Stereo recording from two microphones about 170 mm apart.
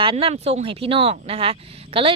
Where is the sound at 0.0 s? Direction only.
30° right (ahead or behind).